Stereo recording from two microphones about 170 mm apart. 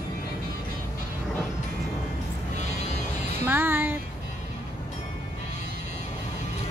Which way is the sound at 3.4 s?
10° right (ahead or behind).